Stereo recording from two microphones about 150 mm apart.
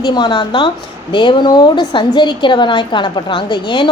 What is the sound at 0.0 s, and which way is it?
A woman's voice, 25° left (ahead or behind).